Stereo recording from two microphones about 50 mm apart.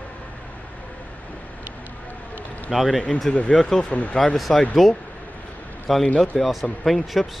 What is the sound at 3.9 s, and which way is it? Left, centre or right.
Speech, left.